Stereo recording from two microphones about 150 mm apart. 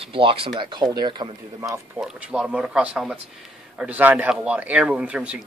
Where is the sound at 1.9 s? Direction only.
5° right (ahead or behind).